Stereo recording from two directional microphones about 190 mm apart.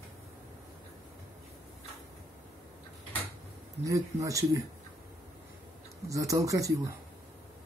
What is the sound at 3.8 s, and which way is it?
Speech, 15° right (ahead or behind).